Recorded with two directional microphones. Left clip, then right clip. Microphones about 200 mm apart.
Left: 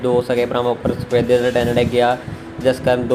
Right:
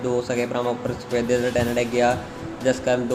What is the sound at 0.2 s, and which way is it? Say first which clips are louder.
Speech: left 6 dB; 15° left (ahead or behind).